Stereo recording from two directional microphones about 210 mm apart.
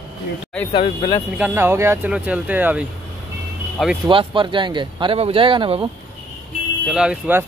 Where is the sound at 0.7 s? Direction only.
20° left (ahead or behind).